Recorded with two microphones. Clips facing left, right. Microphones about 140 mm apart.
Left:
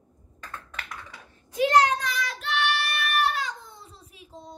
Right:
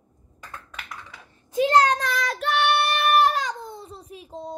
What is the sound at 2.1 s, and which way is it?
Child singing, 45° right (ahead or behind).